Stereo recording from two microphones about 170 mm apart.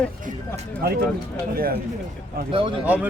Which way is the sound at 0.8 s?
60° right (ahead or behind).